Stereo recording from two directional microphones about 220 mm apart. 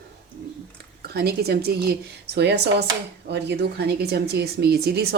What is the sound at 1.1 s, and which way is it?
A woman's voice, 45° right (ahead or behind).